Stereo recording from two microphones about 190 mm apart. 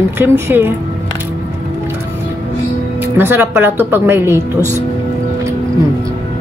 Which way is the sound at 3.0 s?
10° right (ahead or behind).